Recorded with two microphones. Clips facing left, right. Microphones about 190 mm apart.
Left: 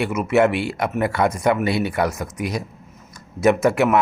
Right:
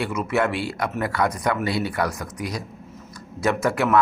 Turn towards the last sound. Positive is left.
turn(degrees=20)  # may be behind; listen again after turning